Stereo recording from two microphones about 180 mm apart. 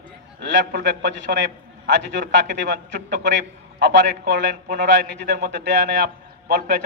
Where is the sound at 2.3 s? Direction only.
75° right (ahead or behind).